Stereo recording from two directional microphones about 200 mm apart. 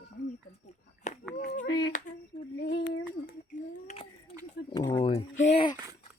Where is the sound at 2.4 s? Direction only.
40° left (ahead or behind).